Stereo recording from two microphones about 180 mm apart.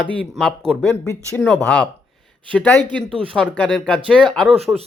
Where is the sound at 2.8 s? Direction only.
25° right (ahead or behind).